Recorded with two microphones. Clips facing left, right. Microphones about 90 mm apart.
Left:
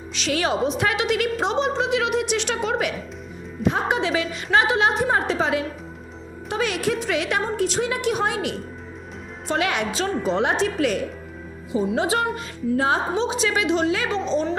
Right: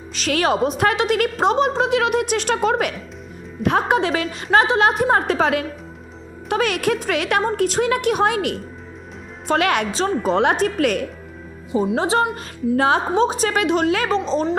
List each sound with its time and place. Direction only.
0.1 s a woman's voice: 50° right (ahead or behind)
4.5 s a woman's voice: 35° right (ahead or behind)
4.8 s a woman's voice: 50° right (ahead or behind)
9.5 s a woman's voice: 60° right (ahead or behind)
11.9 s a woman's voice: 30° right (ahead or behind)
12.7 s speech: 75° right (ahead or behind)
13.1 s a woman's voice: 45° right (ahead or behind)
14.1 s a woman's voice: 35° right (ahead or behind)